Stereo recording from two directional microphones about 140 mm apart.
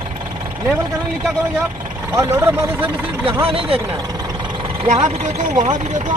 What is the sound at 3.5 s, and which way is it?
Speech, 40° right (ahead or behind).